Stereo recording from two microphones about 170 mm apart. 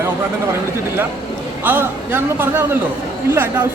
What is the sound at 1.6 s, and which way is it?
Speech, 10° right (ahead or behind).